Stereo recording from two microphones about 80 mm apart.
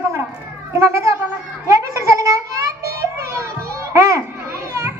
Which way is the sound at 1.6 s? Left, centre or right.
Right.